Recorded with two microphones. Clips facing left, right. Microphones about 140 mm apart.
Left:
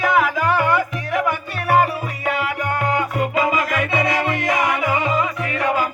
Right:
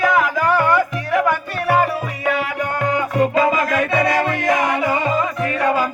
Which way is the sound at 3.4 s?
45° right (ahead or behind).